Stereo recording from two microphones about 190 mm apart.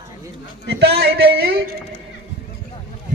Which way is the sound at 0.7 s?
60° right (ahead or behind).